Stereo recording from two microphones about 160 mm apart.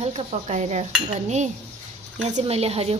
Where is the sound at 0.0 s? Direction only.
40° right (ahead or behind).